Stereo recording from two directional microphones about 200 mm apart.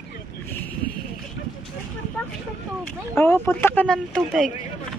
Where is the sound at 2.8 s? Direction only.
5° left (ahead or behind).